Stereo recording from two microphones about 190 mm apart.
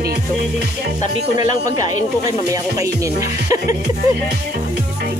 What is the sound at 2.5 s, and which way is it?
Speech, 15° right (ahead or behind).